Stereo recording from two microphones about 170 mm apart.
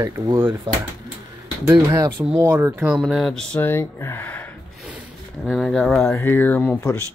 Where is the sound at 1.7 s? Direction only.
15° right (ahead or behind); by 6.0 s 5° left (ahead or behind).